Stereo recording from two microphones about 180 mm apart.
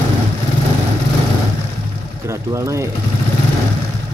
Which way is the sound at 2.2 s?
15° right (ahead or behind).